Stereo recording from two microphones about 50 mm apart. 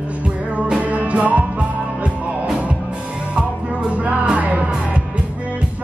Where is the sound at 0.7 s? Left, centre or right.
Right.